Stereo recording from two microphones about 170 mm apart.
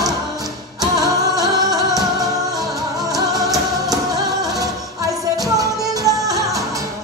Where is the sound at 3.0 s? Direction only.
20° right (ahead or behind).